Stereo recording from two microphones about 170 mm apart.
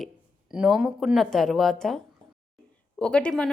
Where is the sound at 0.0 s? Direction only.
5° right (ahead or behind).